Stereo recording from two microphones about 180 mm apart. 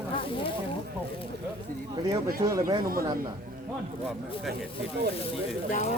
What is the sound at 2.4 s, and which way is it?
Speech, 15° right (ahead or behind).